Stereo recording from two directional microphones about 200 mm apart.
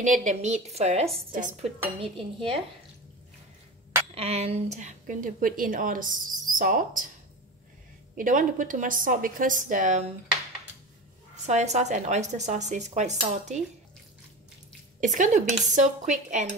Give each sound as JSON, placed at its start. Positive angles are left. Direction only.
{"t": 0.0, "sound": "speech", "side_deg": -40}
{"t": 2.0, "sound": "dishes", "side_deg": -25}
{"t": 4.1, "sound": "speech", "side_deg": -30}
{"t": 8.2, "sound": "speech", "side_deg": -40}
{"t": 11.4, "sound": "speech", "side_deg": -35}
{"t": 15.0, "sound": "speech", "side_deg": -40}